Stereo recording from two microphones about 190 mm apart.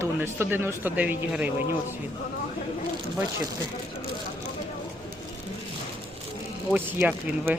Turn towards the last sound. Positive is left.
turn(degrees=-10)  # may be behind; listen again after turning